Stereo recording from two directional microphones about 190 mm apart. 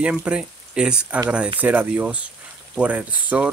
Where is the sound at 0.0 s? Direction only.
5° right (ahead or behind).